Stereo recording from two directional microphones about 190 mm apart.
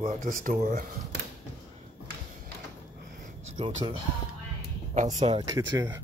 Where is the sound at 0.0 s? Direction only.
45° right (ahead or behind).